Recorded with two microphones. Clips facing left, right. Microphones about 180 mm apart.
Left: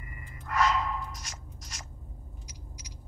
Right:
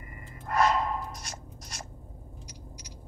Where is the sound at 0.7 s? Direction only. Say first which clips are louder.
Right 2 dB; 45° right (ahead or behind).